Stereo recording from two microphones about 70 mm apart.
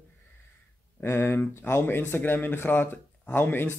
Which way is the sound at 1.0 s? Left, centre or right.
Left.